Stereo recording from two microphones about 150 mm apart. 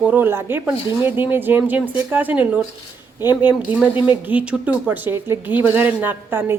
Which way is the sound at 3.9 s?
30° left (ahead or behind).